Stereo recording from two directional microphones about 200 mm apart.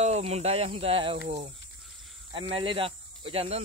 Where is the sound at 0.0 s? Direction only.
35° right (ahead or behind).